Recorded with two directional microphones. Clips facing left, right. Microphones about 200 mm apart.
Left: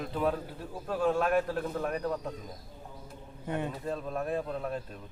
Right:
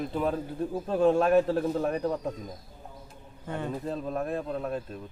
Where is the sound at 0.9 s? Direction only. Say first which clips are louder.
Right 5 dB; 25° right (ahead or behind).